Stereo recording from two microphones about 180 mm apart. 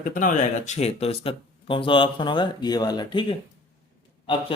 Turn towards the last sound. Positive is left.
turn(degrees=30)  # may be behind; listen again after turning